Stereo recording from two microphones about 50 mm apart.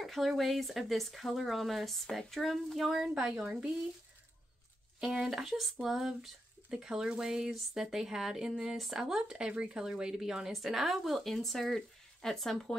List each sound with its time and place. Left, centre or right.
0.0 s speech: centre
3.0 s speech: centre
5.0 s speech: centre